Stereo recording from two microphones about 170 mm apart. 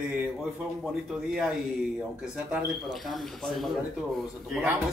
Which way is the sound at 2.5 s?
Centre (ahead or behind).